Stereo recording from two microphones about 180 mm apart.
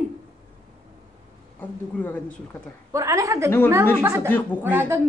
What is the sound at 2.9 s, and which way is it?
A woman's voice, 20° right (ahead or behind).